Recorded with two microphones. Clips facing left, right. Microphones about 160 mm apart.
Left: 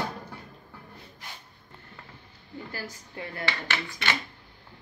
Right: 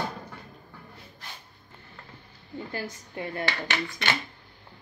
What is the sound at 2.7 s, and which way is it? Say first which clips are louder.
A woman's voice: right 5 dB; 25° right (ahead or behind).